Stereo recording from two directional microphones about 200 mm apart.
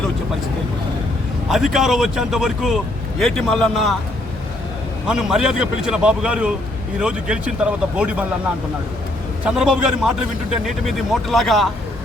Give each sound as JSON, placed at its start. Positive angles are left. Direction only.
{"t": 1.5, "sound": "a man's voice", "side_deg": 0}
{"t": 5.0, "sound": "a man's voice", "side_deg": -5}
{"t": 9.4, "sound": "a man's voice", "side_deg": -5}